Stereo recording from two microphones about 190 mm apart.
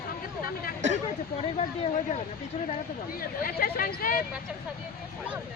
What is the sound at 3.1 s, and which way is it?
A woman's voice, 50° left (ahead or behind).